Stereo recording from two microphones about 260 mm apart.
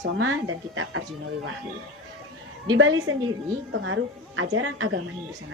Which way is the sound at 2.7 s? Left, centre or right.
Right.